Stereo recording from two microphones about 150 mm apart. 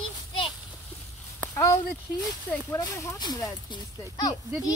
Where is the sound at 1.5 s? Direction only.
20° left (ahead or behind).